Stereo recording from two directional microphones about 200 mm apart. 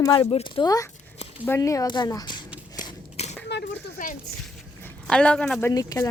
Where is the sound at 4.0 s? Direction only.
40° left (ahead or behind).